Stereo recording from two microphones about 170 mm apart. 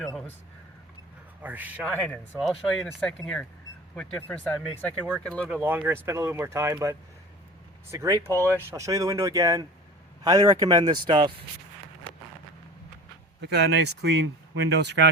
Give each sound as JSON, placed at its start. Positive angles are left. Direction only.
{"t": 0.0, "sound": "speech", "side_deg": 0}
{"t": 1.4, "sound": "a man's voice", "side_deg": -10}
{"t": 1.8, "sound": "speech", "side_deg": 10}
{"t": 5.5, "sound": "speech", "side_deg": -10}
{"t": 13.4, "sound": "speech", "side_deg": -90}